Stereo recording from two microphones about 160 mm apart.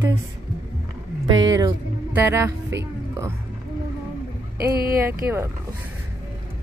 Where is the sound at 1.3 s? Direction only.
25° right (ahead or behind).